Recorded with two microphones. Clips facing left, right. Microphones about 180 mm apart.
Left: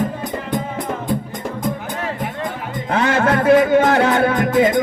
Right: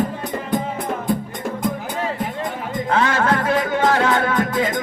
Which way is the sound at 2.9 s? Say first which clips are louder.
Left 3 dB; 30° left (ahead or behind).